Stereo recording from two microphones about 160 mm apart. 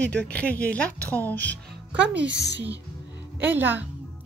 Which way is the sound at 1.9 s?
90° right.